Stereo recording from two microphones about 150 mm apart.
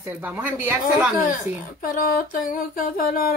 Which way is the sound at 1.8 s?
70° left (ahead or behind).